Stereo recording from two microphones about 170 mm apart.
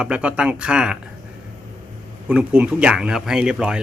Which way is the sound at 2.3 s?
5° right (ahead or behind).